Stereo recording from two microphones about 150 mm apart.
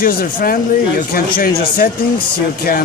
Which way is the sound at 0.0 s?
75° left (ahead or behind).